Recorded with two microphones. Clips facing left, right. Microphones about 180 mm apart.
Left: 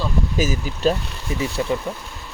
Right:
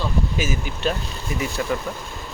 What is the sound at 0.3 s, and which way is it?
Speech, 40° left (ahead or behind).